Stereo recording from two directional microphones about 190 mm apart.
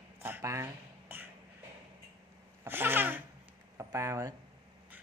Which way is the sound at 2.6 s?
10° right (ahead or behind).